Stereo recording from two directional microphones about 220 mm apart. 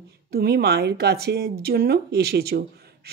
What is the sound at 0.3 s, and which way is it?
Speech, 45° right (ahead or behind).